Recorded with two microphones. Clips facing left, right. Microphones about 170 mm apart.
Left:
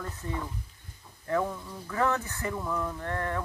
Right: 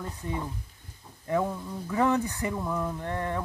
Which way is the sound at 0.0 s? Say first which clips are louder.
Right 2 dB; 20° right (ahead or behind).